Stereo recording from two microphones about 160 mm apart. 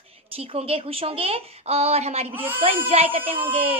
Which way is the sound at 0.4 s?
40° right (ahead or behind).